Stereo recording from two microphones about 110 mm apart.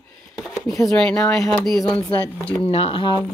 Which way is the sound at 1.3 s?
Centre (ahead or behind).